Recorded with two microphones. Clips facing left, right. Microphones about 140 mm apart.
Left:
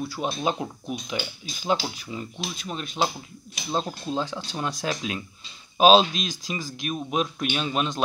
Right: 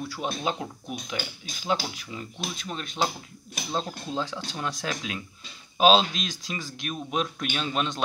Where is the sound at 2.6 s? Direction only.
15° left (ahead or behind).